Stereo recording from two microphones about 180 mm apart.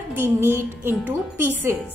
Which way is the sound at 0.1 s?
10° right (ahead or behind).